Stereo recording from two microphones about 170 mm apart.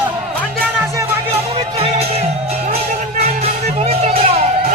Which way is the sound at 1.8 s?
35° right (ahead or behind).